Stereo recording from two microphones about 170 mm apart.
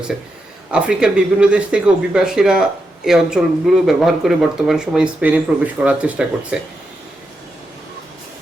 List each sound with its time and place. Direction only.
0.7 s speech: 5° right (ahead or behind)